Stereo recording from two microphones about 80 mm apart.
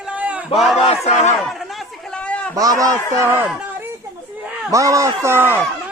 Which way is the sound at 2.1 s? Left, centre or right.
Centre.